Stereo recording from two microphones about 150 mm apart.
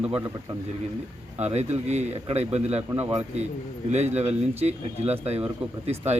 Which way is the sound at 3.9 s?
45° right (ahead or behind).